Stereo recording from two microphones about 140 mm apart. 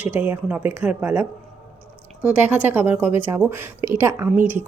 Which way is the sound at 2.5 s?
15° right (ahead or behind).